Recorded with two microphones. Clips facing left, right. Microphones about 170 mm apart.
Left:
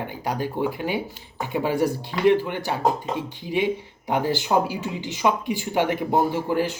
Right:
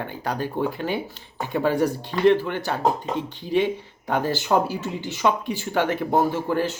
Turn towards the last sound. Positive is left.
turn(degrees=10)  # may be behind; listen again after turning